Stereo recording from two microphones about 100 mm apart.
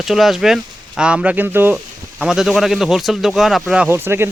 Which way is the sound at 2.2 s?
5° right (ahead or behind).